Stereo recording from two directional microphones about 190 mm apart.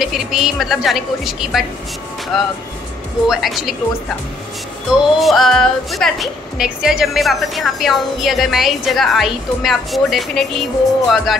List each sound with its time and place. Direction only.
0.0 s a woman's voice: centre (ahead or behind)
4.9 s a woman's voice: 5° right (ahead or behind)